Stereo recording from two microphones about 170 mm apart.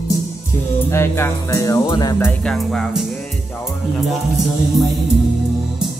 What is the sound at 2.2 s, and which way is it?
Music, centre (ahead or behind).